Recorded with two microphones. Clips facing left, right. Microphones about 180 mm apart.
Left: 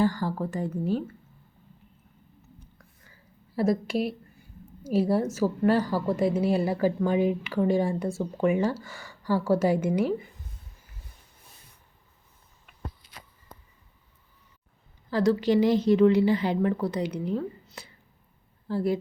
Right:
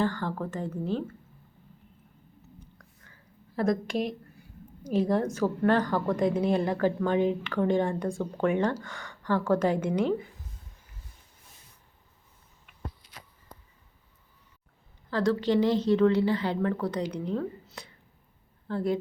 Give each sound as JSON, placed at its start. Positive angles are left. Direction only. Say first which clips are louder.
{"t": 0.0, "sound": "a woman's voice", "louder": "left 3 dB", "side_deg": 10}
{"t": 3.5, "sound": "a woman's voice", "louder": "left 2 dB", "side_deg": 5}
{"t": 15.1, "sound": "a woman's voice", "louder": "left 2 dB", "side_deg": 10}
{"t": 17.8, "sound": "whispering", "louder": "left 1 dB", "side_deg": 5}
{"t": 18.7, "sound": "a woman's voice", "louder": "left 2 dB", "side_deg": 10}